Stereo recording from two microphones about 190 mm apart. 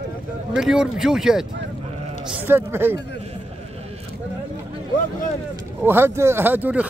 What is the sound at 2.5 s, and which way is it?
Speech, 10° right (ahead or behind).